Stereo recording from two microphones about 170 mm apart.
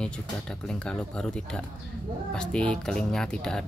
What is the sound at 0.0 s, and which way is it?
A man's voice, 5° left (ahead or behind).